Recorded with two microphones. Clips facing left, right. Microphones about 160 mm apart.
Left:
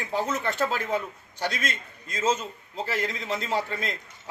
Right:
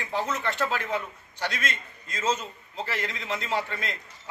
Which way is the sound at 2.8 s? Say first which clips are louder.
Left 3 dB; 40° left (ahead or behind).